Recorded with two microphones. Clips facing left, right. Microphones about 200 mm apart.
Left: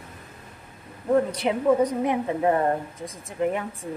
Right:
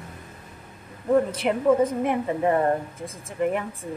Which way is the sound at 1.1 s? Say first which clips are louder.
Right 1 dB; centre (ahead or behind).